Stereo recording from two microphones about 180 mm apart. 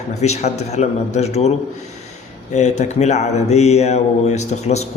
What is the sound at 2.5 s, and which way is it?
A man's voice, 40° left (ahead or behind).